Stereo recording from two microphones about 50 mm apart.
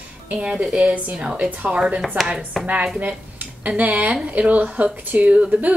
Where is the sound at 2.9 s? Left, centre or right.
Right.